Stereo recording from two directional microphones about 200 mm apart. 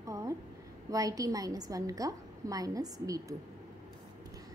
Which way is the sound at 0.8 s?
15° right (ahead or behind).